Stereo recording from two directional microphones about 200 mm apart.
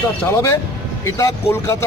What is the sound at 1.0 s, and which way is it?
Speech, 15° left (ahead or behind).